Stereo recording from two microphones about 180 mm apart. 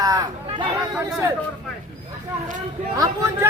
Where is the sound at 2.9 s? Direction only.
20° right (ahead or behind).